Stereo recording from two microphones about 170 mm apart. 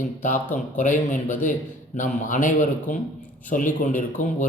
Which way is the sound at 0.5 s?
50° left (ahead or behind).